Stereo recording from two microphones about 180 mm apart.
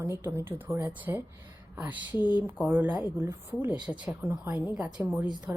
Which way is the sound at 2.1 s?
25° left (ahead or behind).